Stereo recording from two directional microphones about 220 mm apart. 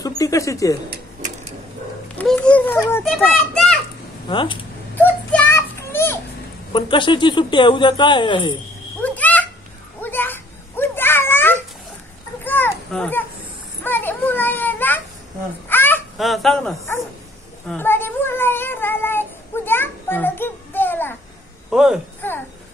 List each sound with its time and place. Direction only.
0.0 s speech: 15° left (ahead or behind)
2.1 s children playing: 5° left (ahead or behind)
4.3 s speech: 20° left (ahead or behind)
5.3 s children playing: 10° left (ahead or behind)
6.7 s speech: 20° left (ahead or behind)
9.0 s a sound: 5° left (ahead or behind)
10.0 s children playing: 10° left (ahead or behind)
12.4 s a sound: 10° left (ahead or behind)
13.8 s children playing: 10° left (ahead or behind)
15.7 s a sound: 10° left (ahead or behind)
17.6 s cat: 10° left (ahead or behind)
21.6 s speech: 5° right (ahead or behind)
22.2 s a sound: 10° left (ahead or behind)